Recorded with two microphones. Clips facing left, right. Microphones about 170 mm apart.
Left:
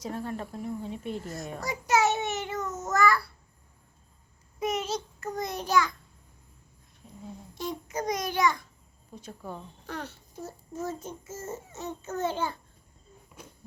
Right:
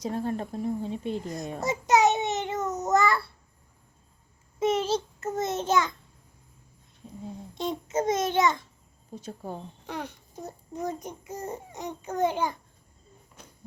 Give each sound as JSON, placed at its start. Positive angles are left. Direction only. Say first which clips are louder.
{"t": 0.0, "sound": "speech", "louder": "right 4 dB", "side_deg": -30}
{"t": 1.2, "sound": "a child's voice", "louder": "right 3 dB", "side_deg": -15}
{"t": 1.5, "sound": "a sound", "louder": "right 4 dB", "side_deg": -25}
{"t": 4.6, "sound": "a sound", "louder": "right 5 dB", "side_deg": -30}
{"t": 7.5, "sound": "a child's voice", "louder": "right 5 dB", "side_deg": -20}
{"t": 9.8, "sound": "a child's voice", "louder": "right 1 dB", "side_deg": -15}